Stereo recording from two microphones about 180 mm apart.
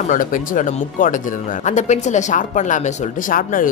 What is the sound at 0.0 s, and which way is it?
Speech, 45° left (ahead or behind).